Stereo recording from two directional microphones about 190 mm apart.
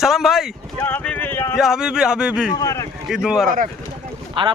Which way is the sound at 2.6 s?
20° left (ahead or behind).